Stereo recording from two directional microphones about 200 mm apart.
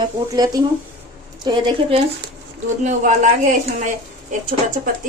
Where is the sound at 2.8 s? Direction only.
35° right (ahead or behind).